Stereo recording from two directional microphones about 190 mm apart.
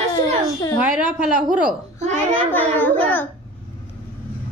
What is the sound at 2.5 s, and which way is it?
Speech, 10° left (ahead or behind).